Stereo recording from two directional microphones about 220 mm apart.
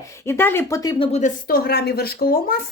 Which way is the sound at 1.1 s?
40° left (ahead or behind).